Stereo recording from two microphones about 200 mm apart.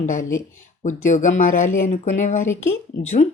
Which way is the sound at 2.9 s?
75° left (ahead or behind).